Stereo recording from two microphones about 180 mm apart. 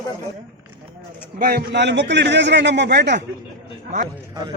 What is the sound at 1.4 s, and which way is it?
A man's voice, 65° right (ahead or behind).